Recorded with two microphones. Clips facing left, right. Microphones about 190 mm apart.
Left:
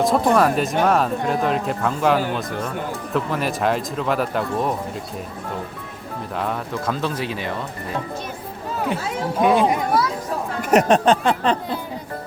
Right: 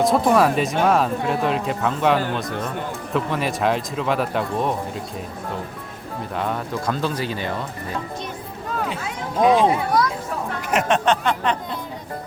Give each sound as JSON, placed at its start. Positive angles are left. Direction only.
{"t": 0.0, "sound": "speech", "side_deg": 0}
{"t": 6.3, "sound": "speech", "side_deg": 0}
{"t": 9.4, "sound": "speech", "side_deg": 5}
{"t": 10.6, "sound": "speech", "side_deg": 40}